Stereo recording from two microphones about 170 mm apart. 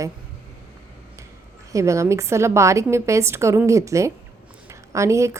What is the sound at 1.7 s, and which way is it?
A woman's voice, 20° right (ahead or behind).